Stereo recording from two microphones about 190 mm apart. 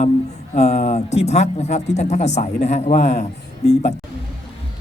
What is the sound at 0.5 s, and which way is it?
Speech, 35° left (ahead or behind).